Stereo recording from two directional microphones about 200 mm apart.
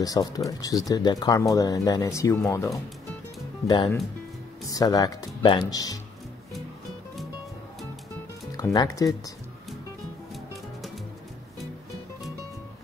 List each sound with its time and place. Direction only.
0.0 s speech: 20° left (ahead or behind)
8.5 s speech: 15° left (ahead or behind)